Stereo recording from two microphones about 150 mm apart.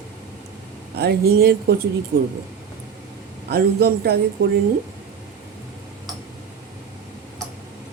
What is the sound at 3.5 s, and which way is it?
Speech, 90° right.